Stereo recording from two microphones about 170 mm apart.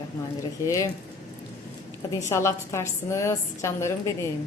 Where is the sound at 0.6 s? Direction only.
20° left (ahead or behind).